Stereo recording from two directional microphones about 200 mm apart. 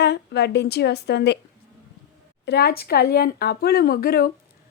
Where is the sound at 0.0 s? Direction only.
55° left (ahead or behind).